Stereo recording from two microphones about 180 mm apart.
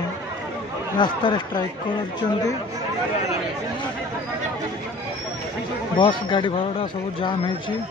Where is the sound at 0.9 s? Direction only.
25° left (ahead or behind).